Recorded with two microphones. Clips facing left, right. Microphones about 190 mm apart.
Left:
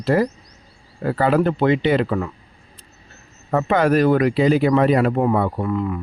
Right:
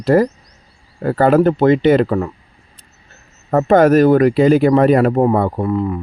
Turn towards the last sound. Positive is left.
turn(degrees=-35)  # may be behind; listen again after turning